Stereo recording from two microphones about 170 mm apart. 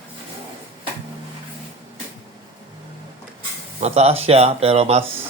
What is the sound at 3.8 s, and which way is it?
Speech, 40° right (ahead or behind).